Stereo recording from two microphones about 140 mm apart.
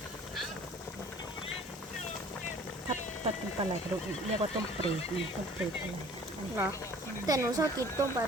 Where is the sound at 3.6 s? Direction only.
50° right (ahead or behind).